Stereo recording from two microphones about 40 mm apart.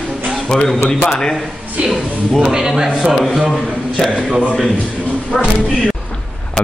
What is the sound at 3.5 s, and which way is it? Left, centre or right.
Speech, centre.